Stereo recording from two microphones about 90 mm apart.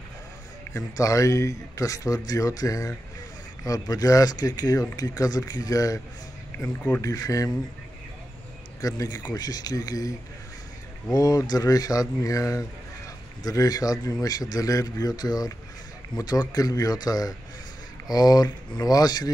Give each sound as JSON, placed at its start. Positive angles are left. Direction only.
{"t": 0.7, "sound": "speech", "side_deg": 35}
{"t": 6.6, "sound": "speech", "side_deg": 15}
{"t": 7.0, "sound": "speech", "side_deg": 40}
{"t": 8.8, "sound": "speech", "side_deg": 40}
{"t": 11.1, "sound": "speech", "side_deg": 45}